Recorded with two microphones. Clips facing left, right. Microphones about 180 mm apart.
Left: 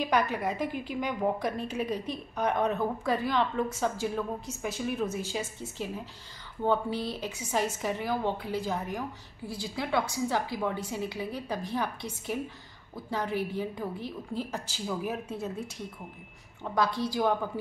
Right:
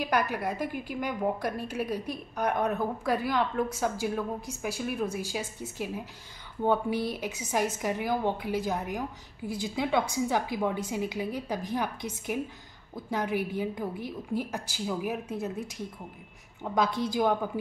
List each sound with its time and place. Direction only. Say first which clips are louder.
0.0 s a woman's voice: left 1 dB; 5° right (ahead or behind)